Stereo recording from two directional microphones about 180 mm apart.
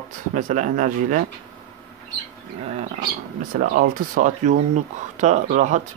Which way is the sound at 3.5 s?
50° right (ahead or behind).